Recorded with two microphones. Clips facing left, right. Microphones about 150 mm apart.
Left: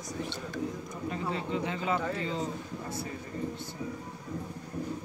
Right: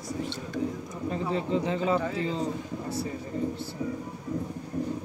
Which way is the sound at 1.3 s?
35° right (ahead or behind).